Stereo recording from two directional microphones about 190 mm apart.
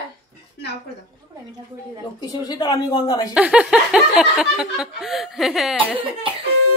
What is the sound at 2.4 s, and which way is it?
Speech, 20° left (ahead or behind).